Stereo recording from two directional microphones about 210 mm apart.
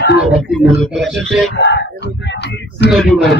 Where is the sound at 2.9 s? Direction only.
Centre (ahead or behind).